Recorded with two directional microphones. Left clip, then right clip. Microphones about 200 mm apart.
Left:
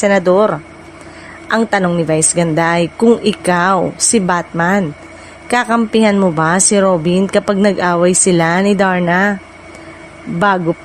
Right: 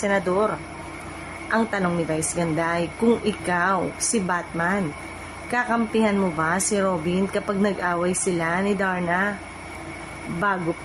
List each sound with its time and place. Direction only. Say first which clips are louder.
0.0 s speech: left 11 dB; 45° left (ahead or behind)